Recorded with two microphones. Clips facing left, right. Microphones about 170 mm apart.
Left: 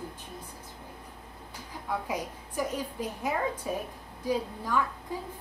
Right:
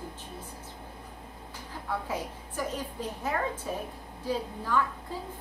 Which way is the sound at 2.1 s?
10° left (ahead or behind).